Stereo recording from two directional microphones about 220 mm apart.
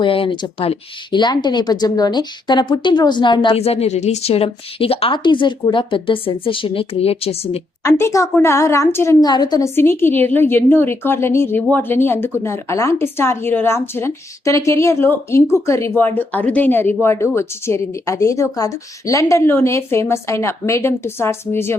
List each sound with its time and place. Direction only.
0.0 s speech: 25° left (ahead or behind)
7.9 s speech: 10° left (ahead or behind)